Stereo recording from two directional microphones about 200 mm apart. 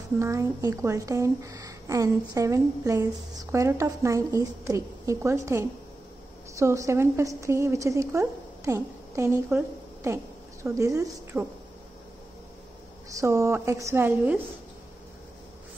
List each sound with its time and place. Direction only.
0.2 s a woman's voice: 15° right (ahead or behind)
13.2 s a woman's voice: 15° right (ahead or behind)